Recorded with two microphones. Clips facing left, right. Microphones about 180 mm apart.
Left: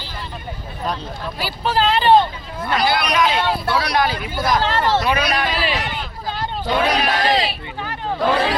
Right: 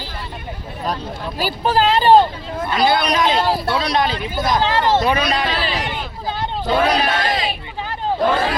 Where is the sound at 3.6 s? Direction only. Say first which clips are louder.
Even; 20° right (ahead or behind).